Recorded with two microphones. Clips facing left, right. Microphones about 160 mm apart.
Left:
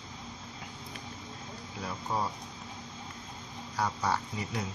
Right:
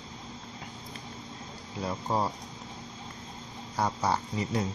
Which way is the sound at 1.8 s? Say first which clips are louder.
Right 4 dB; 35° right (ahead or behind).